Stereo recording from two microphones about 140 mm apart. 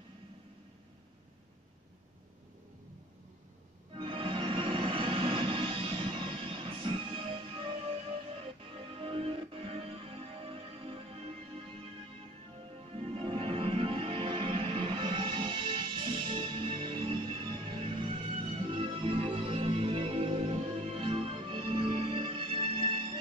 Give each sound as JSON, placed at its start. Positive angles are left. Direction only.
{"t": 3.9, "sound": "music", "side_deg": -40}
{"t": 12.9, "sound": "music", "side_deg": -40}